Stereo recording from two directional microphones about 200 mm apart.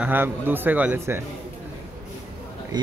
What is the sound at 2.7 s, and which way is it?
Speech, 20° right (ahead or behind).